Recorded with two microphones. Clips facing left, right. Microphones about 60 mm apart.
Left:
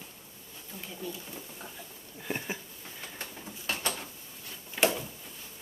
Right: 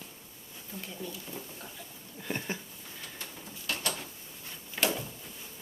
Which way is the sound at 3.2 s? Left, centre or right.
Left.